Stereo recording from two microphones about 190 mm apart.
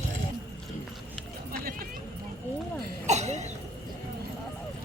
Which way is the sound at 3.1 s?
35° right (ahead or behind).